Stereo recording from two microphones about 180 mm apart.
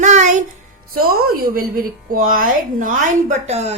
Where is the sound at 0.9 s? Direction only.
55° right (ahead or behind).